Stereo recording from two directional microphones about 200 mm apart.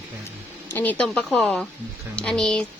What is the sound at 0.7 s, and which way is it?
A woman's voice, 10° left (ahead or behind).